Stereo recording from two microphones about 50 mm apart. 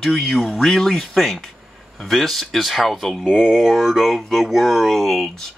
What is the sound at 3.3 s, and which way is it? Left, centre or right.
Speech, centre.